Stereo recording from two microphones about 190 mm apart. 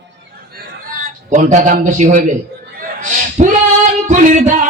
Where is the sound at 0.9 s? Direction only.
45° right (ahead or behind).